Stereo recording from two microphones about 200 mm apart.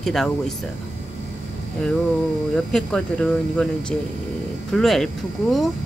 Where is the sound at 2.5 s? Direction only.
5° left (ahead or behind).